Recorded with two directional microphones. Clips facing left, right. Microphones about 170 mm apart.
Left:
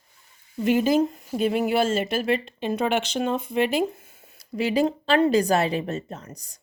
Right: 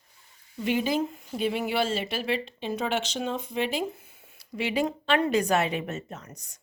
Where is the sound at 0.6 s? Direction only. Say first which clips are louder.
Left 6 dB; 45° left (ahead or behind).